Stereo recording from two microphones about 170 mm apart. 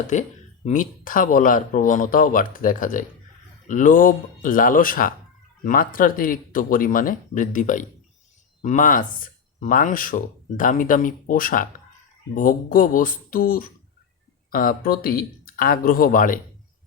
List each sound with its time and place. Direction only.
0.1 s speech: 45° left (ahead or behind)